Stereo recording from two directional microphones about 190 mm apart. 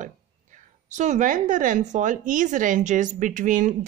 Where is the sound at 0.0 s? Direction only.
40° right (ahead or behind).